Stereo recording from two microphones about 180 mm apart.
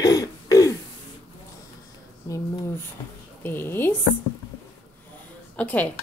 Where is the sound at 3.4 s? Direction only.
10° left (ahead or behind).